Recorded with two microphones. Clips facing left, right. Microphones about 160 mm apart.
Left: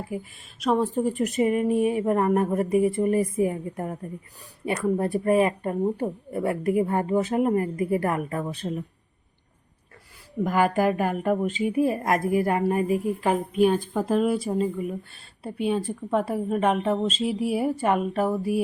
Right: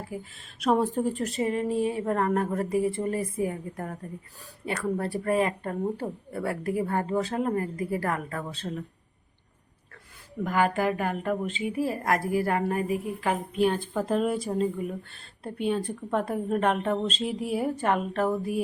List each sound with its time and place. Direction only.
0.1 s a woman's voice: 10° left (ahead or behind)
0.6 s a woman's voice: centre (ahead or behind)
1.2 s a woman's voice: 15° left (ahead or behind)
10.4 s a woman's voice: 10° left (ahead or behind)
13.6 s a woman's voice: 10° left (ahead or behind)